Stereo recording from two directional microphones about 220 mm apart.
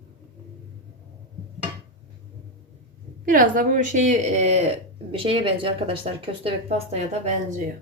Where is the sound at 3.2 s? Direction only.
35° right (ahead or behind).